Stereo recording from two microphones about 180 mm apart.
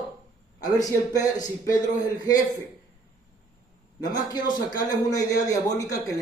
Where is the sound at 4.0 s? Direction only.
25° left (ahead or behind).